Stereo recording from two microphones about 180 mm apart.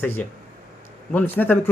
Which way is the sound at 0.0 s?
10° left (ahead or behind).